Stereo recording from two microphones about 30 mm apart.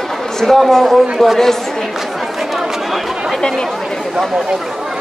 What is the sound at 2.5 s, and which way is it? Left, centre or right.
Chatter, centre.